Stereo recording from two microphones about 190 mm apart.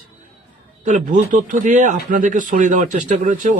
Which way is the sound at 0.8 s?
40° right (ahead or behind).